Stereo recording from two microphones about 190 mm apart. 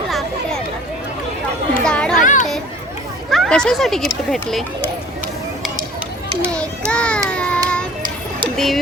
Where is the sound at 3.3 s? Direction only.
Centre (ahead or behind).